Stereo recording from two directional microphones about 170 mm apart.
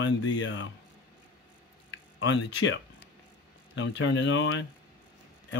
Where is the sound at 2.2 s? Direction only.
90° left.